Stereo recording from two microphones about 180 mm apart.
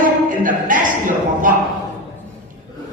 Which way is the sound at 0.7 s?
50° right (ahead or behind).